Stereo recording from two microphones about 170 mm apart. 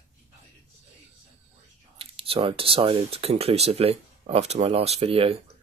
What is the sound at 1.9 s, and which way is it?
Speech, 35° right (ahead or behind).